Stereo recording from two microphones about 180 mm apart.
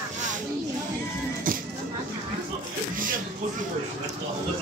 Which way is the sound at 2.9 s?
50° right (ahead or behind).